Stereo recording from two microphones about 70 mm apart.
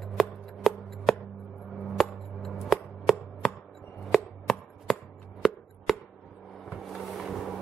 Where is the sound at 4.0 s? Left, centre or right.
Centre.